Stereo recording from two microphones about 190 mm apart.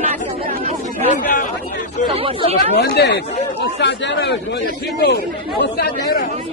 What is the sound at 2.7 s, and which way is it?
Speech, 60° left (ahead or behind).